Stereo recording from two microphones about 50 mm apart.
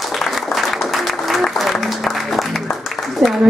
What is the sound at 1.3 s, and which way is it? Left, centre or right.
Applause, centre.